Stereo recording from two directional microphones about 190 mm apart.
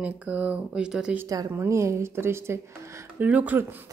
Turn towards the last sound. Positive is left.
turn(degrees=-10)  # may be behind; listen again after turning